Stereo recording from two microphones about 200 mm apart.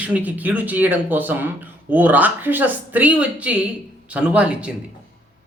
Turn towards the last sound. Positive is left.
turn(degrees=-5)  # may be behind; listen again after turning